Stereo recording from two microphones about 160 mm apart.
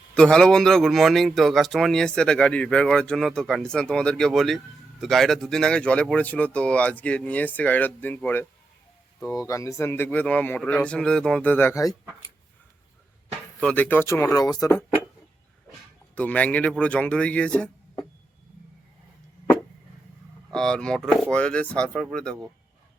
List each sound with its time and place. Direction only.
0.1 s a man's voice: 5° left (ahead or behind); by 11.9 s 20° left (ahead or behind)
13.6 s speech: 10° left (ahead or behind)
16.1 s speech: 10° left (ahead or behind)
20.5 s a man's voice: 5° left (ahead or behind)